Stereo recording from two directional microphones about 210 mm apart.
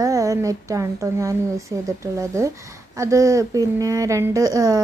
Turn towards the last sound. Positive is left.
turn(degrees=-15)  # may be behind; listen again after turning